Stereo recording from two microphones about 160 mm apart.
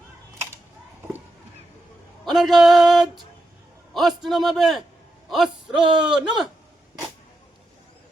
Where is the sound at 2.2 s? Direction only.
Centre (ahead or behind).